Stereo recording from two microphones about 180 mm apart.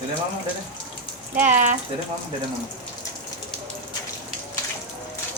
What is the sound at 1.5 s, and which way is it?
Speech, 45° right (ahead or behind).